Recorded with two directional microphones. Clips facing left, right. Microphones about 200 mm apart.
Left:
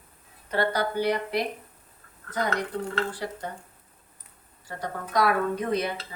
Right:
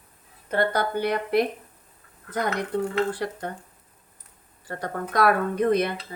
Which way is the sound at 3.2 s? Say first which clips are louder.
Right 3 dB; 60° right (ahead or behind).